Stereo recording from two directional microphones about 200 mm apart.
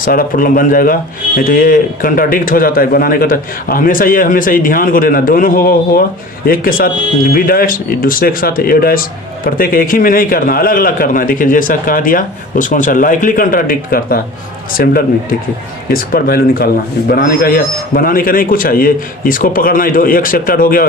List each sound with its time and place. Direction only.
0.0 s speech: 45° left (ahead or behind)